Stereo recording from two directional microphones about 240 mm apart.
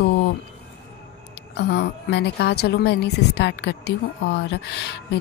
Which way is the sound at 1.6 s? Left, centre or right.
Left.